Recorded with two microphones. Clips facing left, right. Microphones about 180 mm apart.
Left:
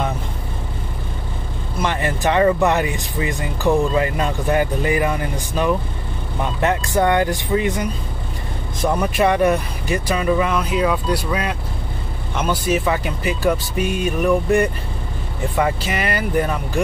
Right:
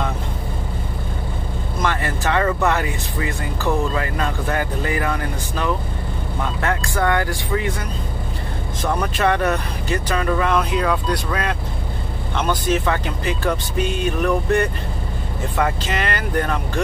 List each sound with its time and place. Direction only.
1.8 s speech: 20° left (ahead or behind)
8.8 s speech: 10° left (ahead or behind)